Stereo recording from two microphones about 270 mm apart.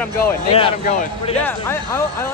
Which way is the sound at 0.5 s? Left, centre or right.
Left.